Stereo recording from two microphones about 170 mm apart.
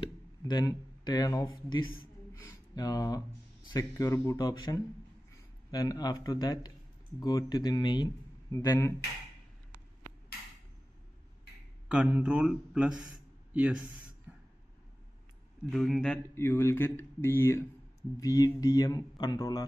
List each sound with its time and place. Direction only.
0.5 s speech: 25° left (ahead or behind)
2.4 s a sound: 25° left (ahead or behind)
3.6 s speech: 20° left (ahead or behind)
11.9 s speech: 5° right (ahead or behind)
13.5 s a sound: 10° right (ahead or behind)
15.7 s speech: centre (ahead or behind)
16.3 s speech: 15° left (ahead or behind)